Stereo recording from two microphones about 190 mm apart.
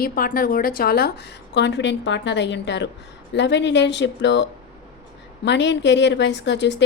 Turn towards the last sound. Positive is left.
turn(degrees=65)  # may be behind; listen again after turning